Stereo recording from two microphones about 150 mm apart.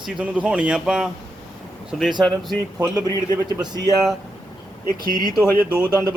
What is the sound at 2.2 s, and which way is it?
Speech, centre (ahead or behind).